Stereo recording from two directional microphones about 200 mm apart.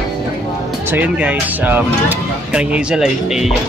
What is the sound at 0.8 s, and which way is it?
Speech, 10° right (ahead or behind).